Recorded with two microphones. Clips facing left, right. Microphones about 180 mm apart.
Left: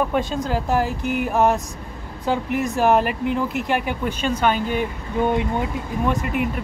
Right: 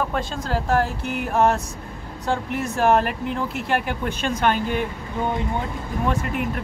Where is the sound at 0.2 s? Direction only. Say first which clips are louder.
Left 3 dB; 15° left (ahead or behind).